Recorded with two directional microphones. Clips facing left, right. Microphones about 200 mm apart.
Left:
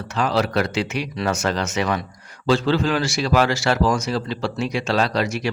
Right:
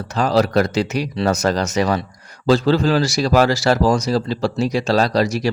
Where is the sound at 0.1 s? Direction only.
40° right (ahead or behind).